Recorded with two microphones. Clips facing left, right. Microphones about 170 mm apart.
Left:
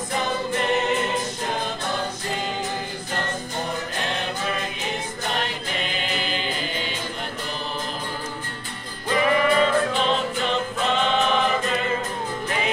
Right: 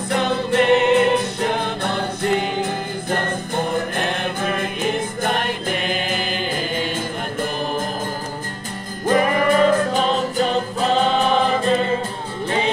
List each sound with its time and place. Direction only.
0.1 s music: 65° right (ahead or behind); by 6.9 s 50° right (ahead or behind)
9.0 s music: 45° right (ahead or behind)